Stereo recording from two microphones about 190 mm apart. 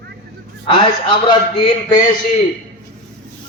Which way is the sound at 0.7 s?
25° left (ahead or behind).